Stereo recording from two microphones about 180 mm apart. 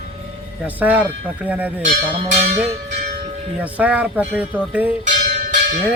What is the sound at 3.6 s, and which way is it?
Speech, 10° right (ahead or behind).